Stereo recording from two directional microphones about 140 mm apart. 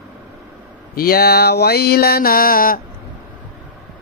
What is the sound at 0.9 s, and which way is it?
Music, 90° left.